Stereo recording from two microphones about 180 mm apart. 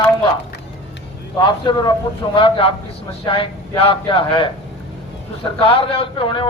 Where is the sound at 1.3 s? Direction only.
25° left (ahead or behind).